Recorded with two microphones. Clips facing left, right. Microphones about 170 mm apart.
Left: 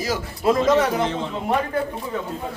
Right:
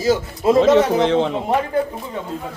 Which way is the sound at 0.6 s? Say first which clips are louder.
Right 7 dB; 75° right (ahead or behind).